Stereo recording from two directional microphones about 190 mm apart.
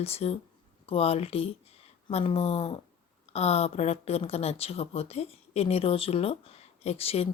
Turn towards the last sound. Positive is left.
turn(degrees=30)  # may be behind; listen again after turning